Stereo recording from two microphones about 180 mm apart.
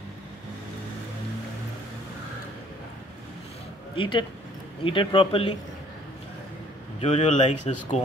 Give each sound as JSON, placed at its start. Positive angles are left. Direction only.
{"t": 3.9, "sound": "speech", "side_deg": 30}
{"t": 7.0, "sound": "speech", "side_deg": 35}